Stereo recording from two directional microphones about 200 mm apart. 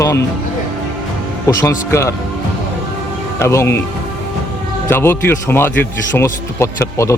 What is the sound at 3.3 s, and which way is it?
Speech, 15° left (ahead or behind).